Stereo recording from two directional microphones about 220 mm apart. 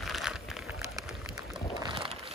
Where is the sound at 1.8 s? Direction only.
25° right (ahead or behind).